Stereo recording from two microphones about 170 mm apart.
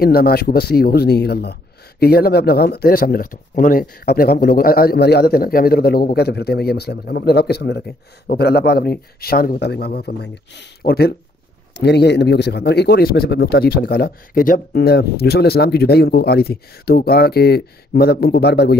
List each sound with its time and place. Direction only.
0.0 s speech: 65° left (ahead or behind)